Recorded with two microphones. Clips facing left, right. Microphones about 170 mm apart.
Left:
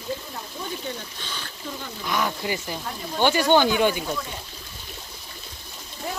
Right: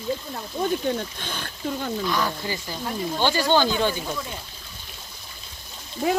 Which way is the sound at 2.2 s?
15° left (ahead or behind).